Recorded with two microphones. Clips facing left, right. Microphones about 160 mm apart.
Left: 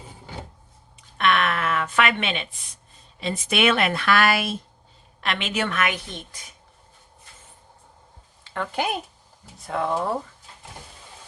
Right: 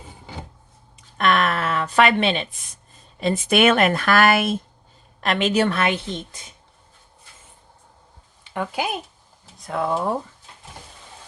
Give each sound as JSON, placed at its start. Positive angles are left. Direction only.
{"t": 1.2, "sound": "a sound", "side_deg": -40}
{"t": 3.2, "sound": "a woman's voice", "side_deg": -45}
{"t": 8.4, "sound": "speech", "side_deg": -15}